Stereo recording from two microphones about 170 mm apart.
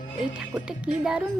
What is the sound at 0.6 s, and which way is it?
Speech, 5° right (ahead or behind).